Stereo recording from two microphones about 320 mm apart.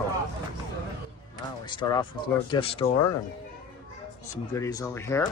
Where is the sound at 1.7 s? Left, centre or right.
Centre.